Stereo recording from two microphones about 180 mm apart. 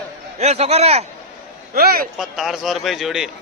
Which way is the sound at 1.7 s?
55° right (ahead or behind).